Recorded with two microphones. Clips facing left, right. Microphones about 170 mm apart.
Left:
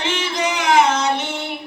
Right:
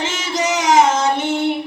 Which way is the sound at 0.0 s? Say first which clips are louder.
Right 1 dB; 40° right (ahead or behind).